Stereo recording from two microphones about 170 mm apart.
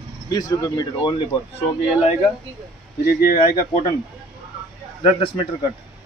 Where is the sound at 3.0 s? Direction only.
60° left (ahead or behind).